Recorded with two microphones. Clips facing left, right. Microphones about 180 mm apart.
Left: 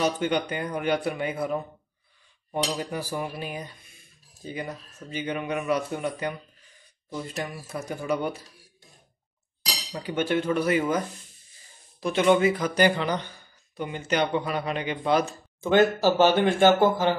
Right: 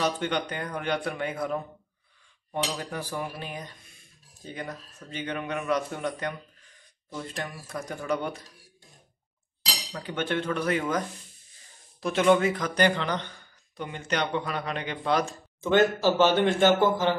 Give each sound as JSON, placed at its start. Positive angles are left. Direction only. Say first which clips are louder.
{"t": 0.0, "sound": "speech", "louder": "left 3 dB", "side_deg": 10}
{"t": 9.9, "sound": "speech", "louder": "left 4 dB", "side_deg": 10}
{"t": 12.0, "sound": "speech", "louder": "left 1 dB", "side_deg": 0}